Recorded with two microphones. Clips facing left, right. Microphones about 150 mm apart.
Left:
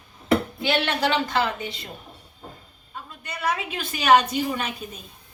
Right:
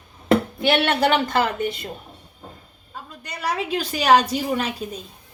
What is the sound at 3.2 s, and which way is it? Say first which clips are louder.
A woman's voice: right 1 dB; 35° right (ahead or behind).